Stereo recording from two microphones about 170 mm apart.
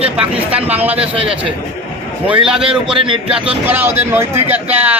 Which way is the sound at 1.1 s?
30° right (ahead or behind).